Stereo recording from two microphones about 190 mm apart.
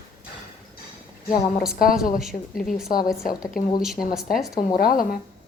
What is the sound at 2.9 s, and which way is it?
Speech, 50° left (ahead or behind).